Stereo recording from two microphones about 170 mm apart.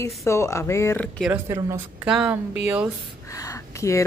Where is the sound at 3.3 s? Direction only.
20° left (ahead or behind).